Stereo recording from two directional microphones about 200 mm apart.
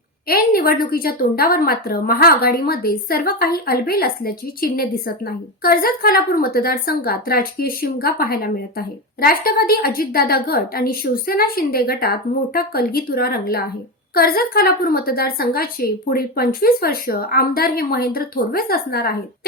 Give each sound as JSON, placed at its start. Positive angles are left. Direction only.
{"t": 0.3, "sound": "a woman's voice", "side_deg": 50}